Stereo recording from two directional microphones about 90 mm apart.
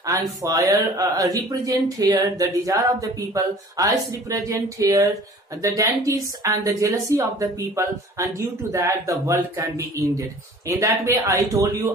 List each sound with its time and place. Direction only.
0.4 s speech: 40° right (ahead or behind)